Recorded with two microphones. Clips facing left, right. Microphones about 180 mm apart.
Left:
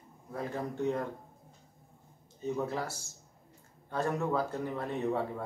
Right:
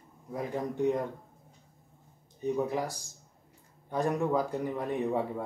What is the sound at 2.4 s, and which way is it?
A man's voice, 15° right (ahead or behind).